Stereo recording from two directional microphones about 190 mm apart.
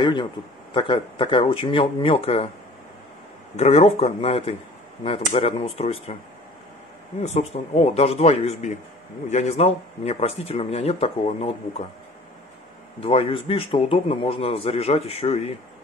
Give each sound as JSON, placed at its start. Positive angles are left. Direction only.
{"t": 0.0, "sound": "speech", "side_deg": 25}
{"t": 3.5, "sound": "a man's voice", "side_deg": 35}
{"t": 7.2, "sound": "a man's voice", "side_deg": 35}
{"t": 13.0, "sound": "a man's voice", "side_deg": 30}